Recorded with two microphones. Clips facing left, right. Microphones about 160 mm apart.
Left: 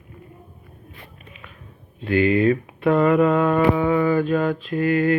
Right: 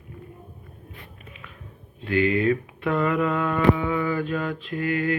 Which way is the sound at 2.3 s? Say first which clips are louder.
Left 4 dB; 35° left (ahead or behind).